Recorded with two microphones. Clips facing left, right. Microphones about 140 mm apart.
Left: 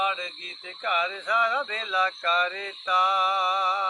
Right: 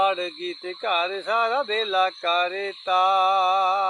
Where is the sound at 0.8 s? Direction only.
30° right (ahead or behind).